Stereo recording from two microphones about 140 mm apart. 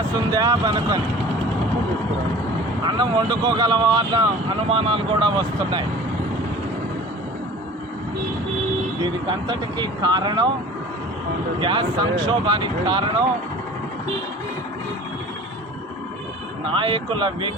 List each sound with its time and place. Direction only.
0.3 s speech: 30° right (ahead or behind)
2.8 s speech: 35° right (ahead or behind)
9.2 s speech: 35° right (ahead or behind)
11.6 s speech: 35° right (ahead or behind)
16.7 s speech: 35° right (ahead or behind)